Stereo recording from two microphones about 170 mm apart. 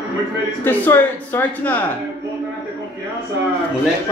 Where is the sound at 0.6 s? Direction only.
10° left (ahead or behind).